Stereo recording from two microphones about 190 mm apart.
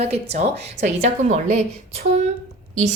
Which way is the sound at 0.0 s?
35° right (ahead or behind).